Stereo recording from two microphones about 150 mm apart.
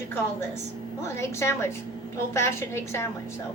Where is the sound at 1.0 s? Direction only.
20° left (ahead or behind).